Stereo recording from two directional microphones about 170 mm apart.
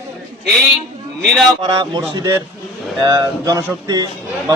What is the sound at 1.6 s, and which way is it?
Speech, 25° right (ahead or behind).